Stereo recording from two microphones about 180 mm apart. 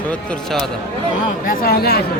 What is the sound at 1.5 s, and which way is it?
Speech, 55° left (ahead or behind).